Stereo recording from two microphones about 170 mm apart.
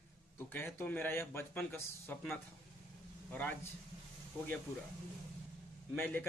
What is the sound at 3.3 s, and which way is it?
Speech, 10° left (ahead or behind).